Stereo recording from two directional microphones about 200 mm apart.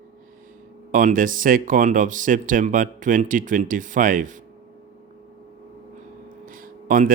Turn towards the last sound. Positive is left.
turn(degrees=-45)  # may be behind; listen again after turning